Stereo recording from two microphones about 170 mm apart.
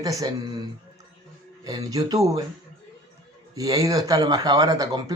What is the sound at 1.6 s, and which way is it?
Speech, 20° right (ahead or behind).